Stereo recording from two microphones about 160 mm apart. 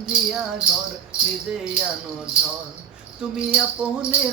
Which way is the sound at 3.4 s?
5° right (ahead or behind).